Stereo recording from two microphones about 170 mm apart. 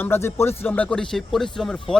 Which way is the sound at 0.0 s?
15° left (ahead or behind).